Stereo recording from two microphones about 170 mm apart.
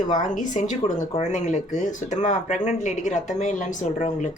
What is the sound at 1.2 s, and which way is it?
Speech, 45° left (ahead or behind).